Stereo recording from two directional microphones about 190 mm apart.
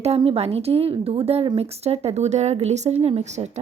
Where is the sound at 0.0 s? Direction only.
30° right (ahead or behind).